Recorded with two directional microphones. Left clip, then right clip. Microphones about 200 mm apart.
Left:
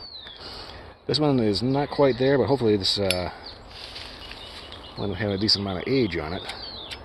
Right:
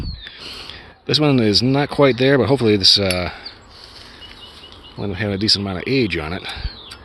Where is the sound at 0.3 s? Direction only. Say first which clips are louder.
Right 6 dB; 35° right (ahead or behind).